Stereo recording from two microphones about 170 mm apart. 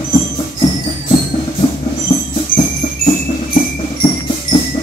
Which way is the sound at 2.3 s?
35° left (ahead or behind).